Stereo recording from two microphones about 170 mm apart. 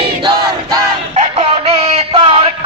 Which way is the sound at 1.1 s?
35° right (ahead or behind).